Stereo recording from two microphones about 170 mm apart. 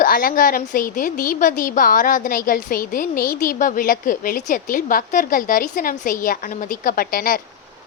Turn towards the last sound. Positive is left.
turn(degrees=60)  # may be behind; listen again after turning